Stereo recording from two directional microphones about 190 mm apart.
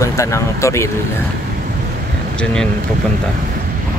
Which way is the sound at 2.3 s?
5° left (ahead or behind).